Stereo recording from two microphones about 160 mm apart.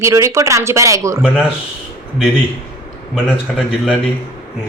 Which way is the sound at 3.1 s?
5° right (ahead or behind).